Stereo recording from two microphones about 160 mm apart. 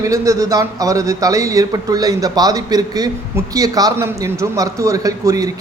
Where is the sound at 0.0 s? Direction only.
20° right (ahead or behind).